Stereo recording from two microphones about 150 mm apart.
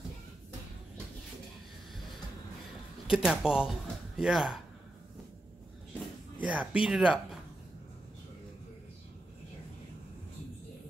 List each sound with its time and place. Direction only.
3.1 s speech: 5° right (ahead or behind)
6.4 s speech: 5° right (ahead or behind)